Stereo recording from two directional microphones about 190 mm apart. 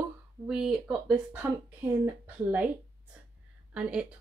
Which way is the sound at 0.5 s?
5° right (ahead or behind).